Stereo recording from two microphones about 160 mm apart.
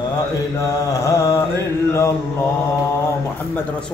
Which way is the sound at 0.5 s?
20° left (ahead or behind).